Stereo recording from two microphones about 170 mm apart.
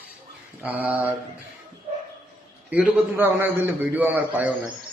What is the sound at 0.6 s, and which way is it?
Speech, 10° right (ahead or behind).